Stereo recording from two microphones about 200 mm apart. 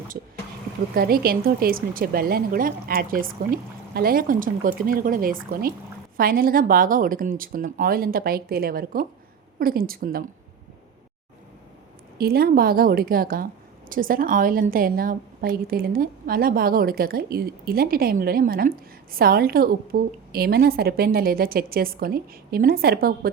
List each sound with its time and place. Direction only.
0.9 s a woman's voice: 50° right (ahead or behind)
12.1 s a woman's voice: 50° right (ahead or behind)